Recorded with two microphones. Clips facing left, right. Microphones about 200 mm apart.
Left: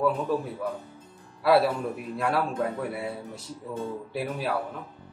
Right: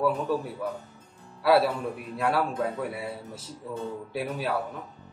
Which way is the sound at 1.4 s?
Centre (ahead or behind).